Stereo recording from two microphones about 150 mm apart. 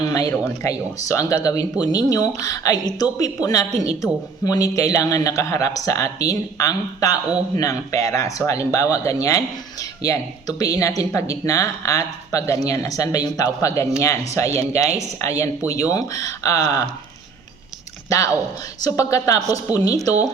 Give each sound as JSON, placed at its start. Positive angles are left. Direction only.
{"t": 0.0, "sound": "a man's voice", "side_deg": 25}
{"t": 18.1, "sound": "a man's voice", "side_deg": 20}